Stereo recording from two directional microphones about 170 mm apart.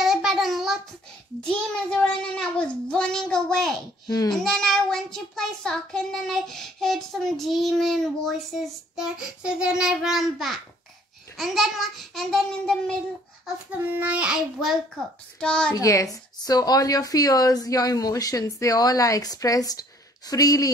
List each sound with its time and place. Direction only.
0.0 s child singing: centre (ahead or behind)
1.9 s child singing: 5° left (ahead or behind)
4.1 s speech: 25° left (ahead or behind)
4.4 s child singing: centre (ahead or behind)
13.7 s child singing: 10° right (ahead or behind)
15.7 s speech: 20° left (ahead or behind)